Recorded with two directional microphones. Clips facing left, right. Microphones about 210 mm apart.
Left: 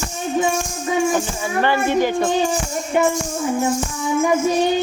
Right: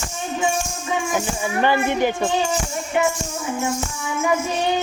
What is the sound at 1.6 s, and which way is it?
Music, 15° right (ahead or behind).